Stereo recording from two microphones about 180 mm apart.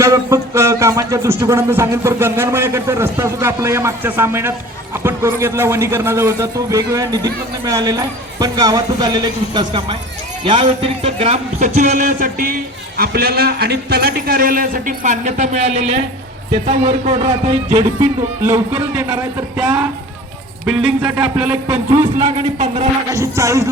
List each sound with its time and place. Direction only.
0.0 s a man's voice: 15° right (ahead or behind); by 17.2 s 35° right (ahead or behind)
18.0 s speech: 15° right (ahead or behind)
22.0 s a man's voice: 30° right (ahead or behind)
23.0 s speech: 15° right (ahead or behind)